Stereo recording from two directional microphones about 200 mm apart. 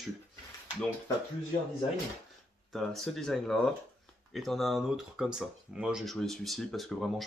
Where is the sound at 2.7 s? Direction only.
Centre (ahead or behind).